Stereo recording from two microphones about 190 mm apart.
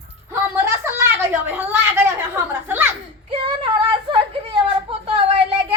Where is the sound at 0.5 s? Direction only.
10° right (ahead or behind).